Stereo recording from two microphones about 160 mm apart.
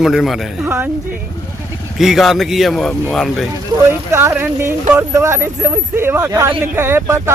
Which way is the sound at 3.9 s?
15° right (ahead or behind).